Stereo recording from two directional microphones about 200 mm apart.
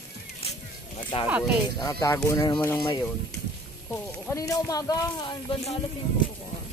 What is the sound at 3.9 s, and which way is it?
Speech, 15° left (ahead or behind).